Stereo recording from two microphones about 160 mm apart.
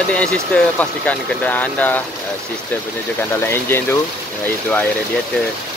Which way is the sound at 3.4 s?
15° left (ahead or behind).